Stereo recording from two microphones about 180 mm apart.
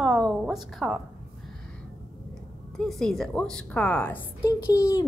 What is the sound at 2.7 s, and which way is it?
A woman's voice, centre (ahead or behind).